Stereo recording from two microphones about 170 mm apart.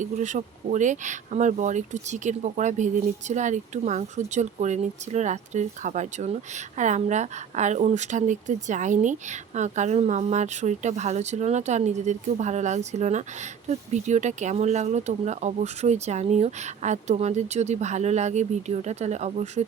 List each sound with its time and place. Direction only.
0.0 s speech: 45° right (ahead or behind)